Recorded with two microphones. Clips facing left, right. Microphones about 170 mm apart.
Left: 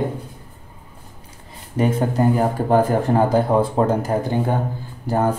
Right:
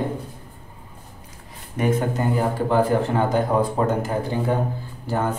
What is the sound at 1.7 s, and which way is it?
Speech, 30° left (ahead or behind).